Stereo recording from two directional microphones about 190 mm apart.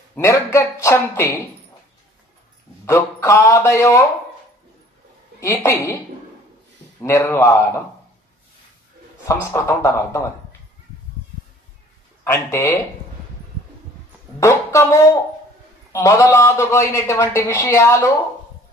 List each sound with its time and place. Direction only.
0.1 s speech: 15° left (ahead or behind)
2.8 s speech: 15° left (ahead or behind)
5.4 s speech: 15° left (ahead or behind)
7.0 s speech: 15° left (ahead or behind)
9.2 s speech: 15° left (ahead or behind)
12.4 s speech: 15° left (ahead or behind)
14.4 s speech: 15° left (ahead or behind)